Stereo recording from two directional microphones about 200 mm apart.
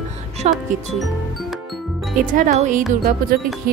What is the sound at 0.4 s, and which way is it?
Music, 35° right (ahead or behind).